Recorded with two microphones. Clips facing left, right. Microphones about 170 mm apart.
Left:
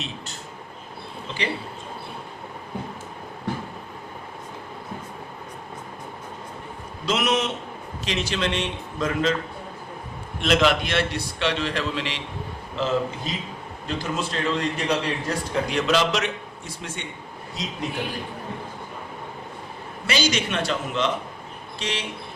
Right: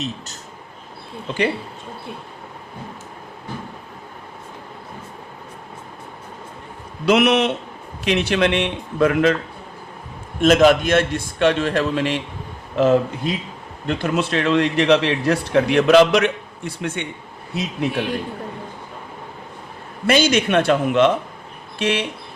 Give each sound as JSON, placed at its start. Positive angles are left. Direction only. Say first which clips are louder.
{"t": 7.0, "sound": "a man's voice", "louder": "right 8 dB", "side_deg": -65}
{"t": 10.4, "sound": "a man's voice", "louder": "right 7 dB", "side_deg": -45}
{"t": 13.8, "sound": "a man's voice", "louder": "right 7 dB", "side_deg": -65}
{"t": 20.1, "sound": "a man's voice", "louder": "right 8 dB", "side_deg": -55}